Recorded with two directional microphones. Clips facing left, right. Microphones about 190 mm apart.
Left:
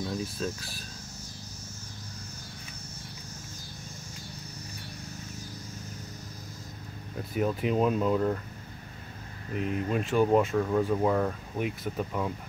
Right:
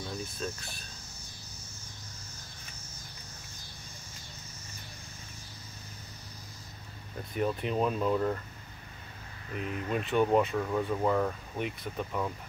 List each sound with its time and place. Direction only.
0.2 s speech: centre (ahead or behind)
7.2 s speech: 5° left (ahead or behind)
9.7 s speech: 45° left (ahead or behind)
9.9 s speech: centre (ahead or behind)